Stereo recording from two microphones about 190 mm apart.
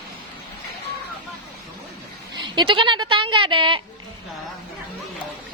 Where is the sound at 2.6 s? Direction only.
25° right (ahead or behind).